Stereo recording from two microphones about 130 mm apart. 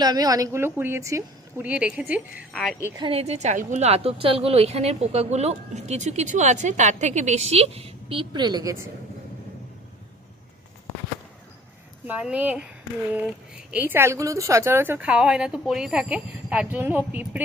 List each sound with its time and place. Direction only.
0.0 s a woman's voice: 30° right (ahead or behind)
1.6 s speech: 10° right (ahead or behind)
2.5 s a woman's voice: 5° left (ahead or behind)
3.0 s a woman's voice: 50° right (ahead or behind); by 8.9 s 25° right (ahead or behind)
12.0 s speech: 10° right (ahead or behind)